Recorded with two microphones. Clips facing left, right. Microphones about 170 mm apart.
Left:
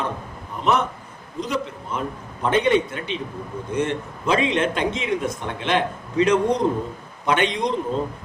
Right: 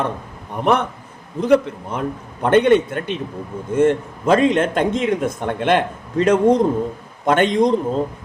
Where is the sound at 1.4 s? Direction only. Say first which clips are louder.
Right 11 dB; 60° right (ahead or behind).